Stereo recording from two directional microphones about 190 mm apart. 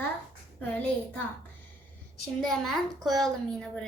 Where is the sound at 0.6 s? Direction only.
5° left (ahead or behind).